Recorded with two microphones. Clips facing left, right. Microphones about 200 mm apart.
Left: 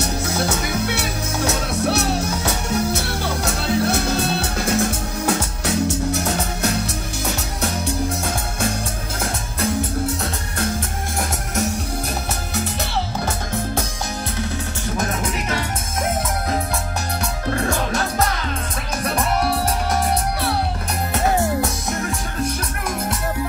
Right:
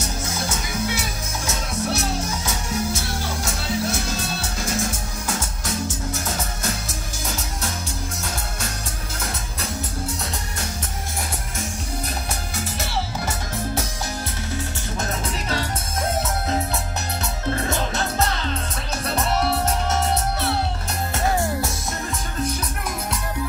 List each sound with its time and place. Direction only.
0.0 s music: 65° left (ahead or behind)